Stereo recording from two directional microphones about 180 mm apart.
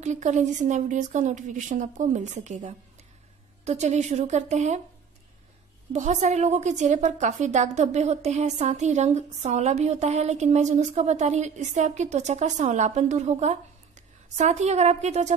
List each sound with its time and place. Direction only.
0.0 s a woman's voice: 40° right (ahead or behind)
5.9 s a woman's voice: 40° right (ahead or behind)